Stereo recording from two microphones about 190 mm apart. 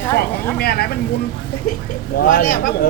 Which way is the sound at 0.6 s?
55° left (ahead or behind).